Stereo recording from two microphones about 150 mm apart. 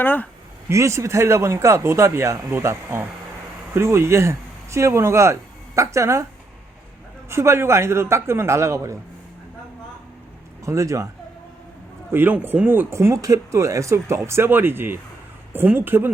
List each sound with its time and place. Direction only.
0.0 s speech: 10° left (ahead or behind)
0.7 s speech: 20° right (ahead or behind)
7.3 s speech: 15° right (ahead or behind)
10.7 s speech: 20° right (ahead or behind)
12.1 s speech: 15° right (ahead or behind)